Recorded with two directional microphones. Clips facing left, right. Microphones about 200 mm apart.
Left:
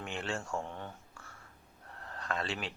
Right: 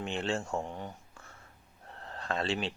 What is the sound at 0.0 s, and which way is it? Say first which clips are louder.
Speech: right 5 dB; 25° right (ahead or behind).